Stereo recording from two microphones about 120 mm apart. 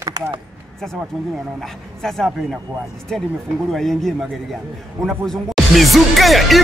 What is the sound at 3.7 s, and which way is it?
Speech, 5° left (ahead or behind).